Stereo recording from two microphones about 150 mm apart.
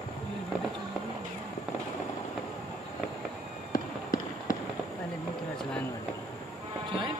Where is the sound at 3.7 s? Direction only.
65° left (ahead or behind).